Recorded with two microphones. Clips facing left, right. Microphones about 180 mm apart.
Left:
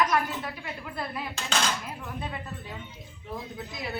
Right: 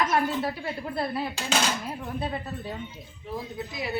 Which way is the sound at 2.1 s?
35° right (ahead or behind).